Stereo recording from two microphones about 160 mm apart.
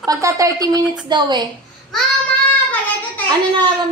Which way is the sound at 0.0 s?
20° right (ahead or behind).